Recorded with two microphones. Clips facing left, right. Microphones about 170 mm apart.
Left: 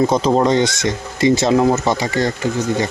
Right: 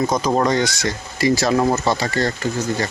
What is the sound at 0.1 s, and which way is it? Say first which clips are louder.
Speech: left 4 dB; 25° left (ahead or behind).